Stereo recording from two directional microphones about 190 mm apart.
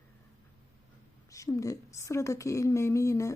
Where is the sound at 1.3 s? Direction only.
15° left (ahead or behind).